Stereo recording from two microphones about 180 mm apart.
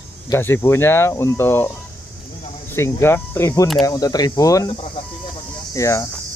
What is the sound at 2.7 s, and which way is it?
Speech, 15° left (ahead or behind).